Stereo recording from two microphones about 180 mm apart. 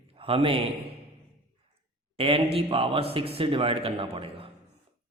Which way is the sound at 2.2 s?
30° right (ahead or behind).